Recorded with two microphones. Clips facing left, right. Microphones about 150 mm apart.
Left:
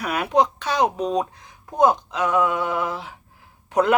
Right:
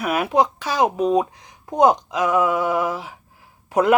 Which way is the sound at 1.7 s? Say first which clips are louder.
Right 2 dB; 15° right (ahead or behind).